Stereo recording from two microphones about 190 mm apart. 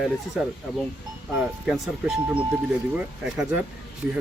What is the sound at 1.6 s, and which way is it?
Speech, centre (ahead or behind).